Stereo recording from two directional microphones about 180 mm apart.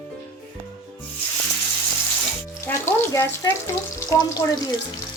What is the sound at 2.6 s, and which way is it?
Frying, 15° left (ahead or behind).